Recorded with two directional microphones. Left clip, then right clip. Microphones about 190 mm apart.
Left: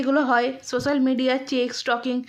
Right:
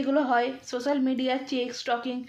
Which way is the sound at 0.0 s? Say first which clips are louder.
Left 4 dB; 35° left (ahead or behind).